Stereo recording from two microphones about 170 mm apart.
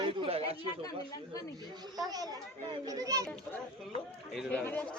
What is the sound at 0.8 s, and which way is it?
Speech, 20° left (ahead or behind).